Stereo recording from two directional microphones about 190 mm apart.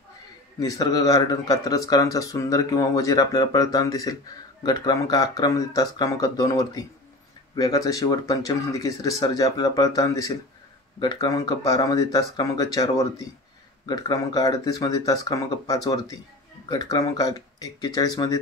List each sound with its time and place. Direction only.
0.6 s speech: 20° left (ahead or behind)